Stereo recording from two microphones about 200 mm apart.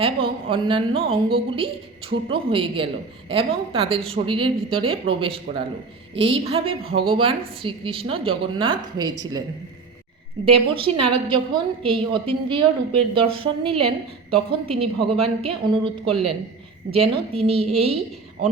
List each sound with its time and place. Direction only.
0.0 s a woman's voice: 25° right (ahead or behind)
10.4 s a woman's voice: 25° right (ahead or behind)